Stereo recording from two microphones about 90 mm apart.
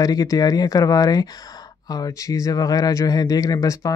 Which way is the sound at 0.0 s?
40° left (ahead or behind).